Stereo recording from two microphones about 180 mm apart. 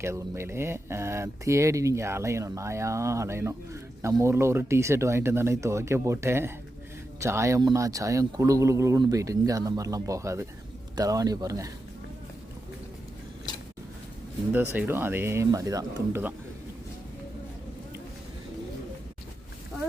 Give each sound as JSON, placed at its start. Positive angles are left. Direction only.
{"t": 0.0, "sound": "speech", "side_deg": -15}
{"t": 14.5, "sound": "speech", "side_deg": -10}